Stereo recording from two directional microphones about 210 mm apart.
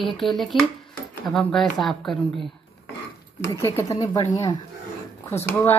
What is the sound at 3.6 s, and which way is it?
A woman's voice, 15° left (ahead or behind).